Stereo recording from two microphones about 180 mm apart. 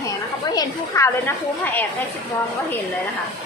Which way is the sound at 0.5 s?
20° left (ahead or behind).